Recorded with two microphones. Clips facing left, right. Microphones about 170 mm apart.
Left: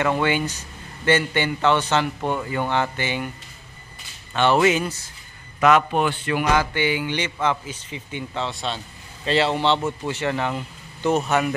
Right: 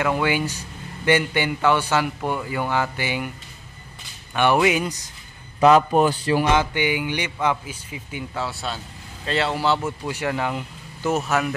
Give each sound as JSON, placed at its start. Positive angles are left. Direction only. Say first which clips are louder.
{"t": 0.0, "sound": "a man's voice", "louder": "even", "side_deg": -10}
{"t": 4.3, "sound": "a man's voice", "louder": "left 1 dB", "side_deg": -10}
{"t": 5.6, "sound": "a man's voice", "louder": "right 3 dB", "side_deg": -35}
{"t": 6.5, "sound": "a man's voice", "louder": "even", "side_deg": -20}